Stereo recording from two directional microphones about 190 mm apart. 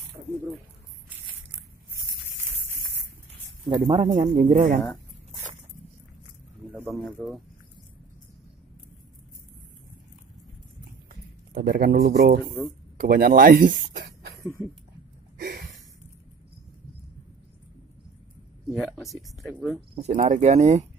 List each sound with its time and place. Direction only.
3.6 s speech: 25° right (ahead or behind)
4.0 s speech: 35° right (ahead or behind)
6.7 s speech: 5° right (ahead or behind)
11.5 s speech: 50° right (ahead or behind)
14.6 s speech: 5° right (ahead or behind)
15.3 s a sound: 50° right (ahead or behind)
18.8 s speech: centre (ahead or behind)
20.0 s speech: 40° right (ahead or behind)